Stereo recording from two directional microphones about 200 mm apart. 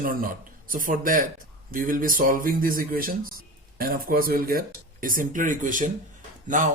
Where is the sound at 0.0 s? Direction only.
45° right (ahead or behind).